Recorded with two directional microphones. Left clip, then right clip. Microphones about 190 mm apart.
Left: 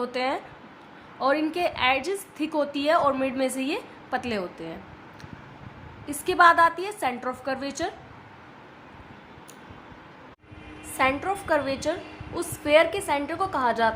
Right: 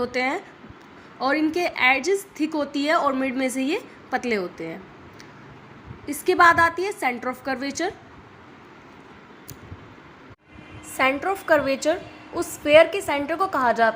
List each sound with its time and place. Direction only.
0.0 s a woman's voice: 10° right (ahead or behind)
6.1 s a woman's voice: 10° right (ahead or behind)
10.9 s a woman's voice: 15° right (ahead or behind)